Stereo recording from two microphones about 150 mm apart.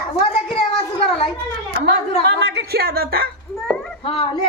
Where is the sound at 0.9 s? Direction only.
45° left (ahead or behind).